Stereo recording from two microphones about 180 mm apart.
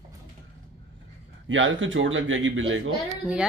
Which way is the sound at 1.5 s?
90° right.